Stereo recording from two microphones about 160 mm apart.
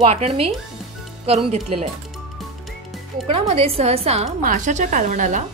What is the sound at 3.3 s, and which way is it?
Speech, 35° right (ahead or behind).